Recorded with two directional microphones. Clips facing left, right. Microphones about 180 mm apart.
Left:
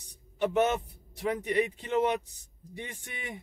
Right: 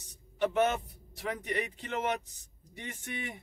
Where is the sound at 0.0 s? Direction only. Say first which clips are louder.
Left 1 dB; 15° left (ahead or behind).